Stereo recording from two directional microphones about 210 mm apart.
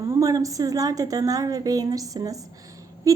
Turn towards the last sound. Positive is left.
turn(degrees=-15)  # may be behind; listen again after turning